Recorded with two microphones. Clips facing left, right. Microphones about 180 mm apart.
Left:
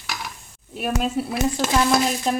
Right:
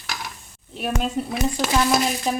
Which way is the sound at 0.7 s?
5° left (ahead or behind).